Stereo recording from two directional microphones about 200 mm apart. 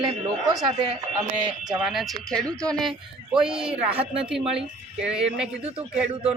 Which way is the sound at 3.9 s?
30° right (ahead or behind).